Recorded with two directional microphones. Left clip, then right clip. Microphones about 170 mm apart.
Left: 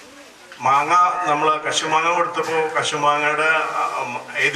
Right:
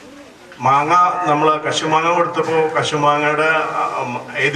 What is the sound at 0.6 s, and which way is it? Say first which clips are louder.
Speech: right 3 dB; 25° right (ahead or behind).